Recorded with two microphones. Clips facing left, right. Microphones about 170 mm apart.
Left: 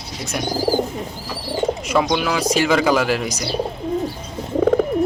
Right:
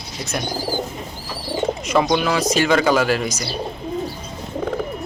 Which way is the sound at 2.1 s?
5° left (ahead or behind).